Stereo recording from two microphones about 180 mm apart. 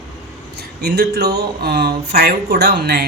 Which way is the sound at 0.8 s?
65° right (ahead or behind).